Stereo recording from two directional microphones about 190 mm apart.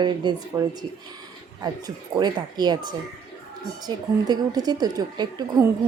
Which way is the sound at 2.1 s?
20° right (ahead or behind).